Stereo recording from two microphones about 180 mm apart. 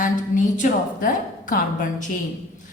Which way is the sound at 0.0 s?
45° left (ahead or behind).